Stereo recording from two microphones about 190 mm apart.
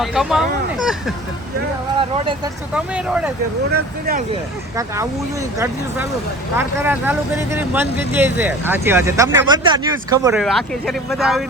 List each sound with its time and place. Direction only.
0.0 s speech: centre (ahead or behind)
2.0 s speech: 25° right (ahead or behind)
2.7 s speech: 5° right (ahead or behind)
4.8 s speech: 15° right (ahead or behind)
10.3 s speech: centre (ahead or behind)